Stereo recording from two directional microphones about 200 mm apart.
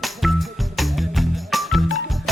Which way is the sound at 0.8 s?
Centre (ahead or behind).